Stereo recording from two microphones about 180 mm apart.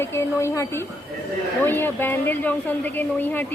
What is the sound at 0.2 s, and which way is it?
Speech, 15° left (ahead or behind).